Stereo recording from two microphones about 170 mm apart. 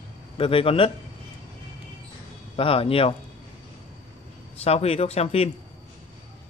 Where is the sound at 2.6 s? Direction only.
35° left (ahead or behind).